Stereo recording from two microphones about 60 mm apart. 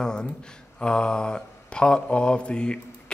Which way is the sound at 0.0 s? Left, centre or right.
Centre.